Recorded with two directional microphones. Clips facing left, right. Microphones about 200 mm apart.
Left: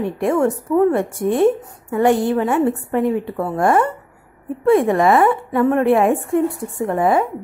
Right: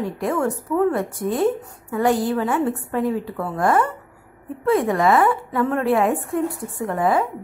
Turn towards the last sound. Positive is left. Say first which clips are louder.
# left 3 dB
turn(degrees=25)  # may be behind; listen again after turning